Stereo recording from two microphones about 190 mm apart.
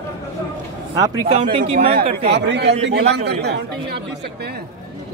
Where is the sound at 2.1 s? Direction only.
60° right (ahead or behind).